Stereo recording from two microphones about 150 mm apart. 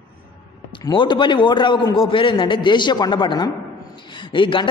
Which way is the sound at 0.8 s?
30° left (ahead or behind).